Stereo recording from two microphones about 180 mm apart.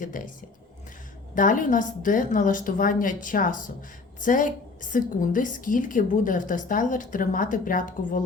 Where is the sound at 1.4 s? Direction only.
45° left (ahead or behind).